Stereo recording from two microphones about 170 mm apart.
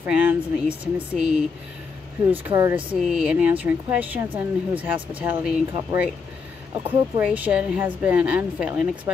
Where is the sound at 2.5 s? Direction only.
20° right (ahead or behind).